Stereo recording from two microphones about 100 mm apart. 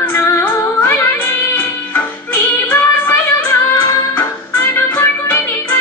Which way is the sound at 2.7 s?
20° left (ahead or behind).